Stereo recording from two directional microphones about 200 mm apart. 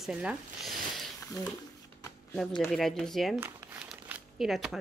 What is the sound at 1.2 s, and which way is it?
Speech, 15° left (ahead or behind).